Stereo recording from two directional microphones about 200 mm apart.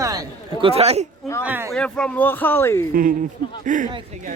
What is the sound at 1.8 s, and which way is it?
Speech, 5° left (ahead or behind).